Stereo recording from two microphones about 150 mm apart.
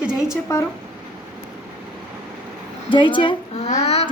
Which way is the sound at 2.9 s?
35° left (ahead or behind).